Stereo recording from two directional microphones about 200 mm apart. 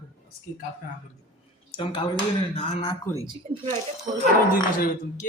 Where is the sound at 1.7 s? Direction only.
25° left (ahead or behind).